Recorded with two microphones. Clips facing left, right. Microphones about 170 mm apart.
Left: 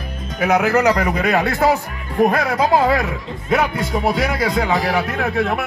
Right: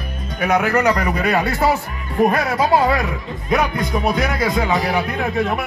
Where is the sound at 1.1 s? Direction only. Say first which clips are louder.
Left 1 dB; 15° left (ahead or behind).